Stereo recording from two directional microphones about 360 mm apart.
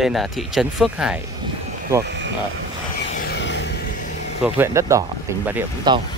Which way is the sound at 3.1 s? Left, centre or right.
Left.